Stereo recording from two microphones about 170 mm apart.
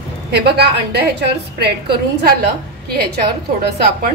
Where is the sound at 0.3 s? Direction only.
70° right (ahead or behind).